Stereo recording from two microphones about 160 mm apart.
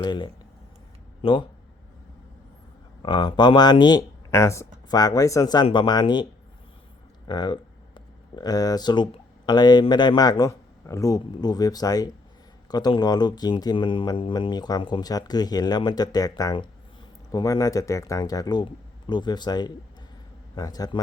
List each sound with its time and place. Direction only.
0.0 s speech: 30° left (ahead or behind)
3.0 s speech: 30° left (ahead or behind)
7.3 s speech: 30° left (ahead or behind)